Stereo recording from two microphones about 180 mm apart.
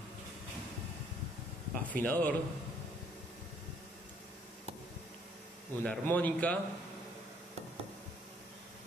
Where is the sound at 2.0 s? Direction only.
50° left (ahead or behind).